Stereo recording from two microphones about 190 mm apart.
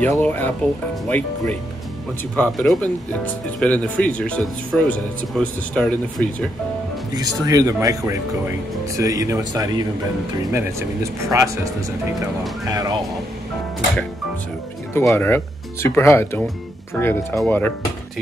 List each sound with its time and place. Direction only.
0.0 s speech: 10° left (ahead or behind)
7.2 s speech: 20° right (ahead or behind)
12.6 s speech: 20° right (ahead or behind)
15.0 s speech: 10° left (ahead or behind)